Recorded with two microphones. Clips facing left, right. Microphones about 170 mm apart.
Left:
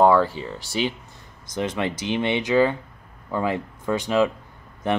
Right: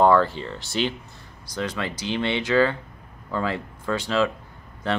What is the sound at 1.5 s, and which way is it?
Speech, 20° left (ahead or behind).